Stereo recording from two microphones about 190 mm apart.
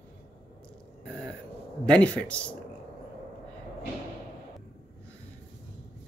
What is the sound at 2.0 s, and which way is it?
Speech, 5° left (ahead or behind).